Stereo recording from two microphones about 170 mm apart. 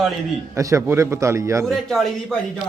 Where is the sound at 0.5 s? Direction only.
15° right (ahead or behind).